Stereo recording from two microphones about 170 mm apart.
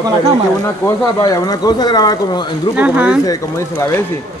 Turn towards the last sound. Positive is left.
turn(degrees=20)  # may be behind; listen again after turning